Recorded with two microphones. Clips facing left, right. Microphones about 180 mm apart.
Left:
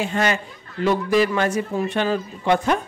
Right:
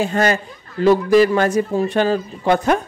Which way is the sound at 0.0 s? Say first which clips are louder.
Right 4 dB; 40° right (ahead or behind).